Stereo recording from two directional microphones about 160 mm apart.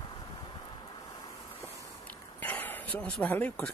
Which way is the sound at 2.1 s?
10° left (ahead or behind).